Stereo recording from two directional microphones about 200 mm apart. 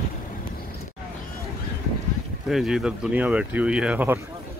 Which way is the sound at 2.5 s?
Centre (ahead or behind).